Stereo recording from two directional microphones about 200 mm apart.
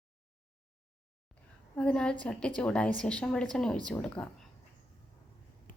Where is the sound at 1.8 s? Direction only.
5° left (ahead or behind).